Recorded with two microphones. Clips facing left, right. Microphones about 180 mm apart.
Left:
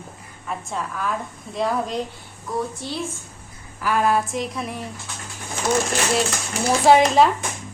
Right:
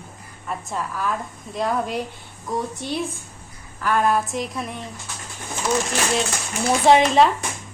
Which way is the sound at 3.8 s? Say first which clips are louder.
Even; 5° left (ahead or behind).